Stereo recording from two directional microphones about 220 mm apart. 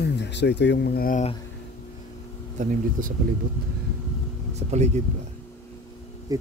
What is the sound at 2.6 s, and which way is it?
Speech, 35° right (ahead or behind).